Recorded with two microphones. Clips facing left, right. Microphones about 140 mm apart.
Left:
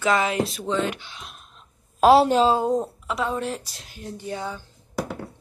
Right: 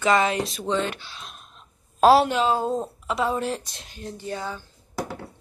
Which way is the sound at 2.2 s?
35° left (ahead or behind).